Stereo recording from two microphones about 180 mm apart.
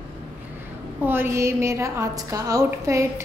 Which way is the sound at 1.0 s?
10° right (ahead or behind).